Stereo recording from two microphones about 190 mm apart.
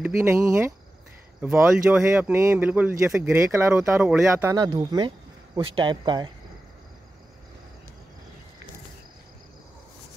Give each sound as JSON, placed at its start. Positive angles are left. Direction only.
{"t": 0.0, "sound": "speech", "side_deg": -15}
{"t": 4.6, "sound": "speech", "side_deg": -20}